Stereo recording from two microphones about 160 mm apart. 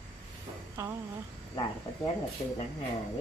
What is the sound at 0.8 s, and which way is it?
Speech, 15° right (ahead or behind).